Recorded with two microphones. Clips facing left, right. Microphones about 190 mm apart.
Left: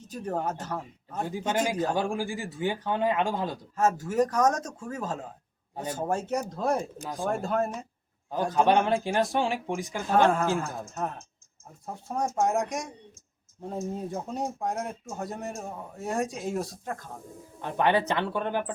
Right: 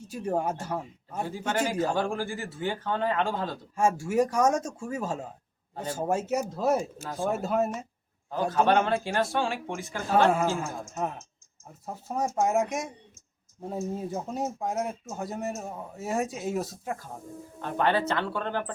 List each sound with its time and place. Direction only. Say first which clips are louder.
0.0 s speech: right 2 dB; 10° right (ahead or behind)
1.2 s speech: left 1 dB; 15° left (ahead or behind)
1.7 s speech: right 1 dB; 10° right (ahead or behind)
2.0 s speech: even; 15° left (ahead or behind)
3.8 s speech: even; 10° right (ahead or behind)
7.0 s speech: right 1 dB; 15° left (ahead or behind)
7.3 s speech: right 1 dB; 5° right (ahead or behind)
8.4 s speech: left 1 dB; 10° left (ahead or behind)
10.2 s speech: even; 10° right (ahead or behind)
11.9 s a man's voice: even; 5° right (ahead or behind)
17.6 s speech: left 1 dB; 15° left (ahead or behind)